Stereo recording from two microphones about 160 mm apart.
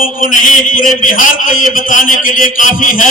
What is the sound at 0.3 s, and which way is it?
A man's voice, 60° left (ahead or behind).